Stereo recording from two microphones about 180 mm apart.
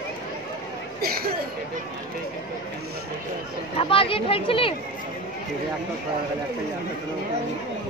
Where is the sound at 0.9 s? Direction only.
55° right (ahead or behind).